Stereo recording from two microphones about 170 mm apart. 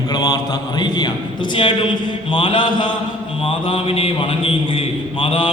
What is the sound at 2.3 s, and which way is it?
A man's voice, 30° left (ahead or behind).